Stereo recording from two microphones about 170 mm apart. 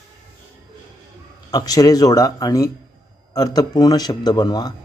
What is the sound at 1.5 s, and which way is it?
A man's voice, 20° left (ahead or behind).